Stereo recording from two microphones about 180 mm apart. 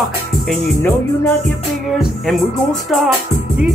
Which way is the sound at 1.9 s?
Centre (ahead or behind).